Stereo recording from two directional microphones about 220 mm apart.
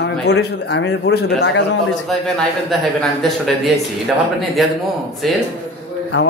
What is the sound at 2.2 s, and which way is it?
Speech, centre (ahead or behind).